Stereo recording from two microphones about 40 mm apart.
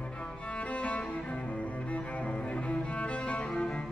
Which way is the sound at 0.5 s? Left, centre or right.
Left.